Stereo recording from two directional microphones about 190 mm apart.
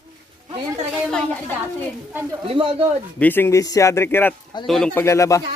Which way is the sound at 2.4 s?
30° right (ahead or behind).